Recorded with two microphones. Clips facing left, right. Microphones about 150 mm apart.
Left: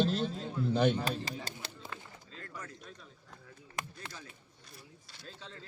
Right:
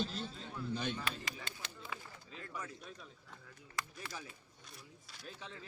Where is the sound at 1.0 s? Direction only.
35° left (ahead or behind).